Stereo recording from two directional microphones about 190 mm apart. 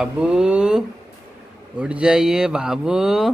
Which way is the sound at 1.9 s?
5° right (ahead or behind).